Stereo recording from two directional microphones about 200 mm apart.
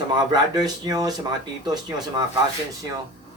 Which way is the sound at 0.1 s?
20° right (ahead or behind).